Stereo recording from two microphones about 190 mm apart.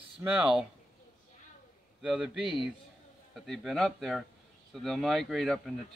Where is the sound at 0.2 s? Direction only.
5° right (ahead or behind).